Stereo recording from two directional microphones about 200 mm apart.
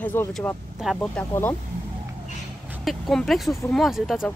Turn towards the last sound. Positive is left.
turn(degrees=0)  # may be behind; listen again after turning